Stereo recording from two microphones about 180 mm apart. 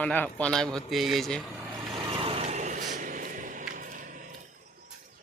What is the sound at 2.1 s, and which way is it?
Vehicle, 30° right (ahead or behind).